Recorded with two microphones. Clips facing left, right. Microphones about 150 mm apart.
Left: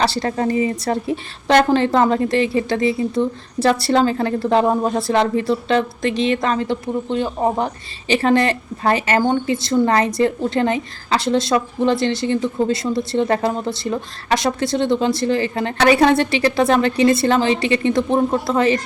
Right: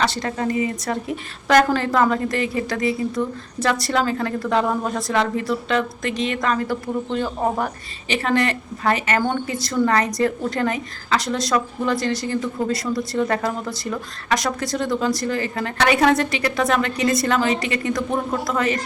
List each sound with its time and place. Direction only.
0.0 s a woman's voice: 35° left (ahead or behind)
8.0 s a woman's voice: 30° left (ahead or behind)